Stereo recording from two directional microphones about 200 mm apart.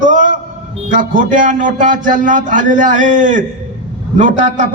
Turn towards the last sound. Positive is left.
turn(degrees=-40)  # may be behind; listen again after turning